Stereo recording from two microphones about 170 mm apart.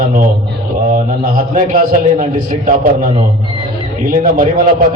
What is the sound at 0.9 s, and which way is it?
A man's voice, 50° right (ahead or behind).